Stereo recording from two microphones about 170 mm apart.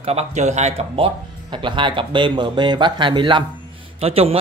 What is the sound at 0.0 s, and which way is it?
A man's voice, 40° right (ahead or behind).